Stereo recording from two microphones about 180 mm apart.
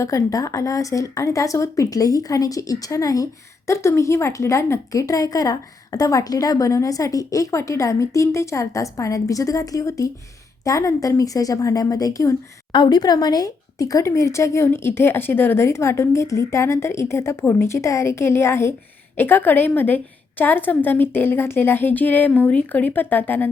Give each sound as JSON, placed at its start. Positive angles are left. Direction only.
{"t": 0.0, "sound": "a woman's voice", "side_deg": 20}